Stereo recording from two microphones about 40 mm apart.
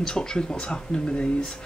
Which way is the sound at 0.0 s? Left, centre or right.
Centre.